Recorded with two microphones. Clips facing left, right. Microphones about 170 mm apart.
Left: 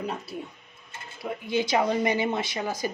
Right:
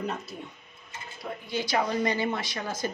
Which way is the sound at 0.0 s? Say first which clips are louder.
Left 1 dB; 10° left (ahead or behind).